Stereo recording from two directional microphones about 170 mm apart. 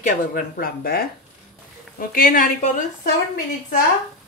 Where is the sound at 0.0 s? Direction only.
60° left (ahead or behind).